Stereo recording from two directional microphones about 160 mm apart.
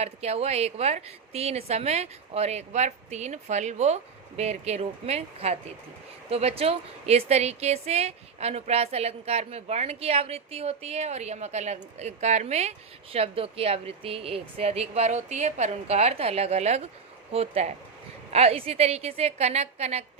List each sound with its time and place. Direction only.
0.0 s a woman's voice: 40° right (ahead or behind)